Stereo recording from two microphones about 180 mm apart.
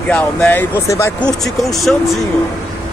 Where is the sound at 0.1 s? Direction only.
5° left (ahead or behind).